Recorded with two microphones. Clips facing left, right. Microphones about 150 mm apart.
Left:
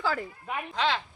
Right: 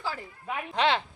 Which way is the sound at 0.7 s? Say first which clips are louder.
Right 3 dB; 65° right (ahead or behind).